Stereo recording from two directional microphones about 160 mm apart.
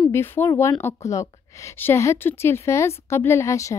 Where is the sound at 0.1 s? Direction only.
15° left (ahead or behind).